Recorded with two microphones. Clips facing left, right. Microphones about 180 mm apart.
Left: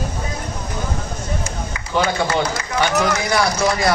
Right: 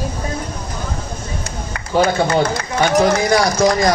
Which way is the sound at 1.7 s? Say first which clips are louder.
Right 5 dB; 45° right (ahead or behind).